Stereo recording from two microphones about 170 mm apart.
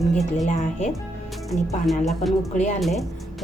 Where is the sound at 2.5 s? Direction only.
45° left (ahead or behind).